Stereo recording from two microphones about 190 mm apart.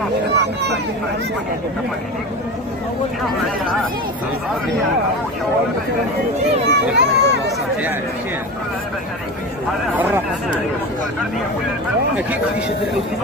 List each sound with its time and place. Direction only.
6.7 s speech: 65° right (ahead or behind)
9.9 s speech: 10° right (ahead or behind)